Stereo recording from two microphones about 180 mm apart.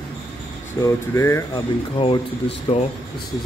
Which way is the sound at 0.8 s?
15° left (ahead or behind).